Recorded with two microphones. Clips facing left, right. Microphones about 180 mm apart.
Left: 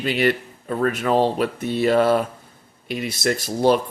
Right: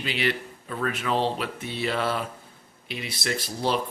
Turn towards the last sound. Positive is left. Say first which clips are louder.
# left 8 dB
turn(degrees=45)  # may be behind; listen again after turning